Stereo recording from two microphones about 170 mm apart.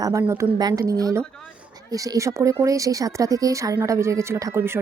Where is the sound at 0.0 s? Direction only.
15° right (ahead or behind).